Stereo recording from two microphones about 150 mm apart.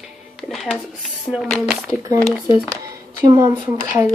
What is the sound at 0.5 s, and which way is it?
A woman's voice, centre (ahead or behind).